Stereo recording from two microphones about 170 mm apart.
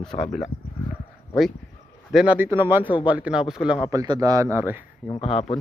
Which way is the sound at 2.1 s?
5° right (ahead or behind).